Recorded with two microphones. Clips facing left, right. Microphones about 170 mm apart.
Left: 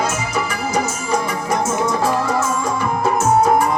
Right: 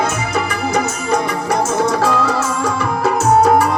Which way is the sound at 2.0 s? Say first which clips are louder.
Right 2 dB; 75° right (ahead or behind).